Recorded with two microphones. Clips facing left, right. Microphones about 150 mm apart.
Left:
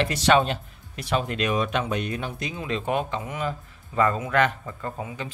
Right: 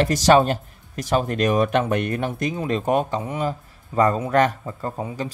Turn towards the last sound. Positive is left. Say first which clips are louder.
# right 5 dB
turn(degrees=-35)  # may be behind; listen again after turning